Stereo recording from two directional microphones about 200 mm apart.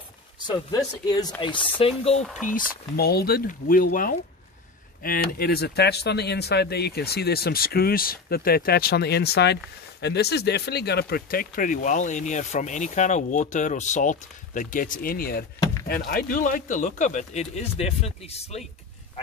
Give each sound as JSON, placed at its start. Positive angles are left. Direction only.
{"t": 0.5, "sound": "speech", "side_deg": 20}
{"t": 2.4, "sound": "speech", "side_deg": 45}